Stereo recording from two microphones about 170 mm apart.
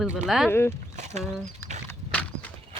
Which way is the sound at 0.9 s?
45° right (ahead or behind).